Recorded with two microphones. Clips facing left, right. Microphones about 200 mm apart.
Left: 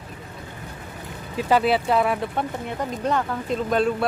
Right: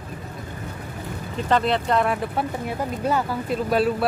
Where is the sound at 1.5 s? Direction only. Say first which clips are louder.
Left 1 dB; 5° left (ahead or behind).